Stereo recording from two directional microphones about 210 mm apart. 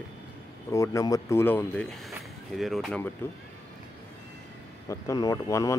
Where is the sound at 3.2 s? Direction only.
10° left (ahead or behind).